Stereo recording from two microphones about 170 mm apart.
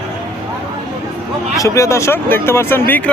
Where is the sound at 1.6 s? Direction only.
15° left (ahead or behind).